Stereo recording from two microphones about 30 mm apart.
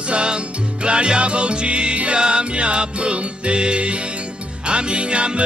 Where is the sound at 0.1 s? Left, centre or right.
Right.